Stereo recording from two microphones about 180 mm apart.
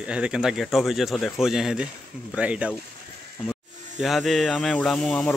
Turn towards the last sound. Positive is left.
turn(degrees=0)  # may be behind; listen again after turning